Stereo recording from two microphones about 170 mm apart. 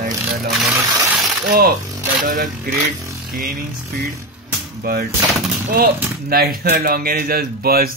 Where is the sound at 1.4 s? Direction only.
60° right (ahead or behind).